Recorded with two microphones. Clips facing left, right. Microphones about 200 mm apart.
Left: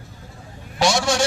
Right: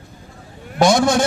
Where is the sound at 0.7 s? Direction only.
55° right (ahead or behind).